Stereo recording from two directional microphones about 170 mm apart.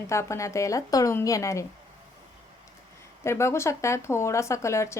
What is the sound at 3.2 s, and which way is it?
A woman's voice, 15° left (ahead or behind).